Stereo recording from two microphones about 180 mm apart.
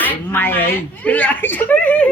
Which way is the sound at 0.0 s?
10° left (ahead or behind).